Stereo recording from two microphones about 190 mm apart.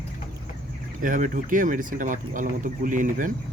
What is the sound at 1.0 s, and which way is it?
Speech, 45° right (ahead or behind).